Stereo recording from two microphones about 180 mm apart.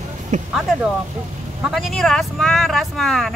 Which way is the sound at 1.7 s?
Centre (ahead or behind).